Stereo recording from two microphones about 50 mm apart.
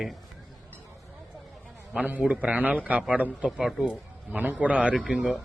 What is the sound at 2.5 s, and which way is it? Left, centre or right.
Speech, right.